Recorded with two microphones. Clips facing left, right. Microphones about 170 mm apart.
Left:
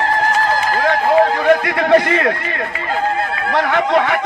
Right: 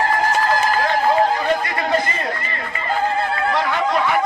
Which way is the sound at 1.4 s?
70° left (ahead or behind).